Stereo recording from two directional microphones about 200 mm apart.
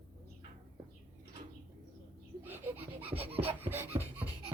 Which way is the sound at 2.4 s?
10° right (ahead or behind).